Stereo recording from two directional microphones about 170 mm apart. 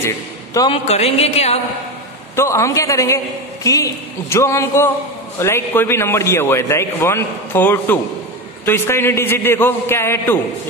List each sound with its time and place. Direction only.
0.8 s speech: 35° left (ahead or behind)
2.3 s a man's voice: 15° left (ahead or behind)